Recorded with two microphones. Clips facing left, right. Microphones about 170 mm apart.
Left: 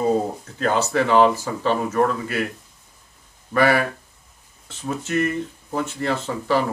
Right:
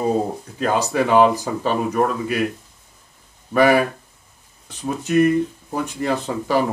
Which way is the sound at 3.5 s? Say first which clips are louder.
Right 3 dB; 15° right (ahead or behind).